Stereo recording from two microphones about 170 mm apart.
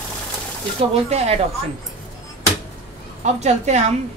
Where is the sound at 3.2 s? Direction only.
45° right (ahead or behind).